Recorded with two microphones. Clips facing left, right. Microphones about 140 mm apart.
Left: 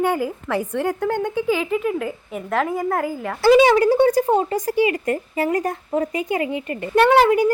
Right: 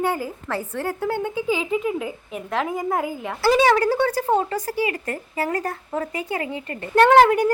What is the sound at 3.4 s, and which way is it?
Speech, 15° left (ahead or behind).